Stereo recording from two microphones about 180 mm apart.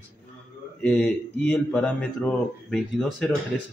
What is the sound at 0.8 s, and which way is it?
Speech, 5° left (ahead or behind).